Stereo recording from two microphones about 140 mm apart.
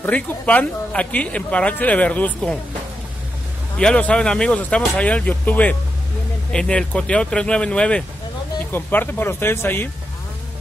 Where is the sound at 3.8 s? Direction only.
5° left (ahead or behind).